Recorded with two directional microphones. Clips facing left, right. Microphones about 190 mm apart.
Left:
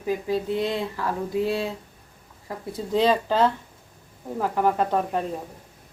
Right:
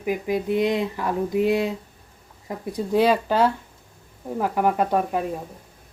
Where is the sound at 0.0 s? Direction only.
15° right (ahead or behind).